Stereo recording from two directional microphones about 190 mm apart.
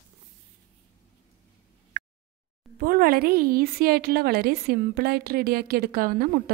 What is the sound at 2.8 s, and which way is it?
A woman's voice, 45° right (ahead or behind).